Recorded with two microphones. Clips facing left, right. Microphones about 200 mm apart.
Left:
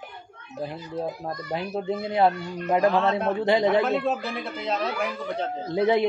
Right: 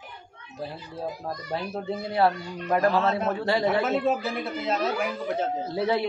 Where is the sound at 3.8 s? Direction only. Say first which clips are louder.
Even; 5° right (ahead or behind).